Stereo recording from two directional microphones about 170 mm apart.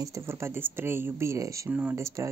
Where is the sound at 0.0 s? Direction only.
15° right (ahead or behind).